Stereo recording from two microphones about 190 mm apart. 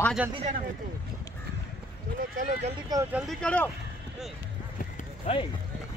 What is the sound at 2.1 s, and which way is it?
Speech, 45° right (ahead or behind).